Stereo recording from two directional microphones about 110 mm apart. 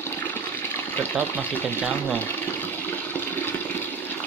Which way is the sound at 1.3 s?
15° left (ahead or behind).